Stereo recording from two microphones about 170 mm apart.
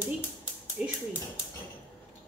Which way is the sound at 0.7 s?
5° right (ahead or behind).